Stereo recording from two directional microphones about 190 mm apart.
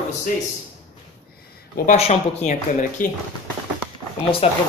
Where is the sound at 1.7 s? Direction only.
45° left (ahead or behind).